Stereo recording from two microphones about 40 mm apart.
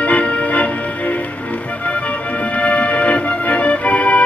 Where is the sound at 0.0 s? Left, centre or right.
Left.